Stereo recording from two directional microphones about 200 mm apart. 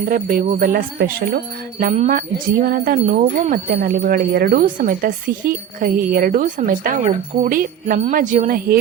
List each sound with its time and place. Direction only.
0.1 s speech: 45° right (ahead or behind)